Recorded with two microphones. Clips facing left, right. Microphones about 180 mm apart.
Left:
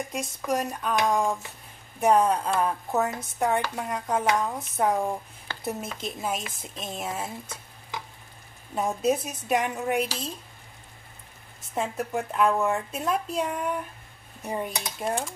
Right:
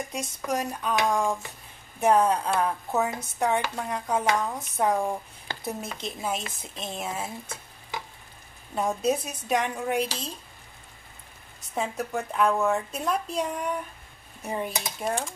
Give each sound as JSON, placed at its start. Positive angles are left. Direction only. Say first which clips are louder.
{"t": 0.1, "sound": "a woman's voice", "louder": "left 3 dB", "side_deg": 0}
{"t": 11.7, "sound": "a woman's voice", "louder": "left 1 dB", "side_deg": 0}